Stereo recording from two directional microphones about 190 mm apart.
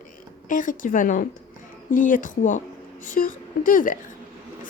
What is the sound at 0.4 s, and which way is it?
Speech, 45° left (ahead or behind).